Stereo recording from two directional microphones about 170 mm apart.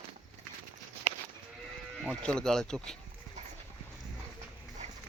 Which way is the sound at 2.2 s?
5° left (ahead or behind).